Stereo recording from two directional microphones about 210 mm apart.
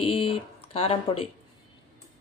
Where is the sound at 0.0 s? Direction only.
25° left (ahead or behind).